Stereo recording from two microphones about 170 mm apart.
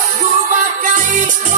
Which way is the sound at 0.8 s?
50° right (ahead or behind).